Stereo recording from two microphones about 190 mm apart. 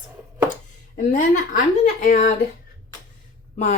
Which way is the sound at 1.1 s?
40° left (ahead or behind).